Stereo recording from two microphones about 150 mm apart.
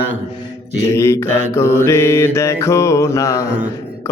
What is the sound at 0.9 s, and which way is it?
Mantra, 20° left (ahead or behind).